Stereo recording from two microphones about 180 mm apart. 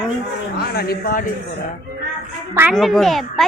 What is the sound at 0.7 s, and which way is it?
Speech, 55° left (ahead or behind).